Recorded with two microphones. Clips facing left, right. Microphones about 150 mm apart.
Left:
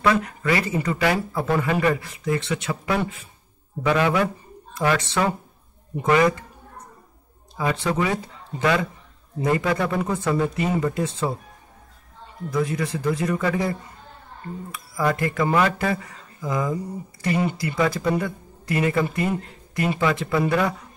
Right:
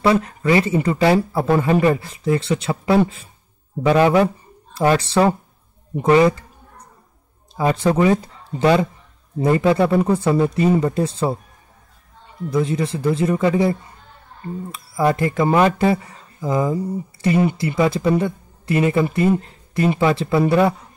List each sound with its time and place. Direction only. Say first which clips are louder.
0.0 s speech: right 4 dB; 30° right (ahead or behind)
7.5 s speech: right 6 dB; 35° right (ahead or behind)
12.4 s speech: right 4 dB; 25° right (ahead or behind)